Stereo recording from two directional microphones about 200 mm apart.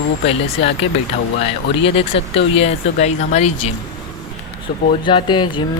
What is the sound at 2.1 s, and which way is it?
Speech, 30° left (ahead or behind).